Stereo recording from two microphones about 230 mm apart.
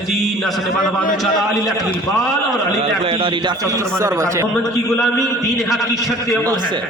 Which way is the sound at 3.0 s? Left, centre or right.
Right.